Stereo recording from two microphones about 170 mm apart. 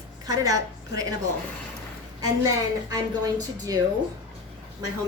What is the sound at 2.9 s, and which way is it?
Speech, 20° right (ahead or behind).